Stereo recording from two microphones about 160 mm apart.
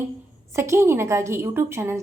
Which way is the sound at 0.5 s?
15° right (ahead or behind).